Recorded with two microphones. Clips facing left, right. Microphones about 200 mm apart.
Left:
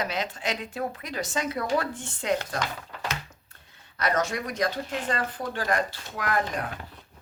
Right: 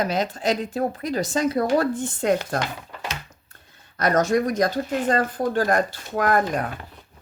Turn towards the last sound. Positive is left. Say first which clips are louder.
# right 7 dB
turn(degrees=-45)  # may be behind; listen again after turning